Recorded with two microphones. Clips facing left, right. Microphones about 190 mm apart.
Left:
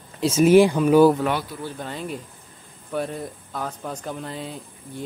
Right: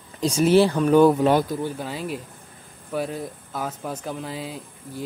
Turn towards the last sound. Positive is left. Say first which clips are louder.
# right 1 dB
turn(degrees=-5)  # may be behind; listen again after turning